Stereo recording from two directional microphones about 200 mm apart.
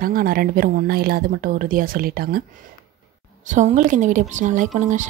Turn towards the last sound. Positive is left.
turn(degrees=-40)  # may be behind; listen again after turning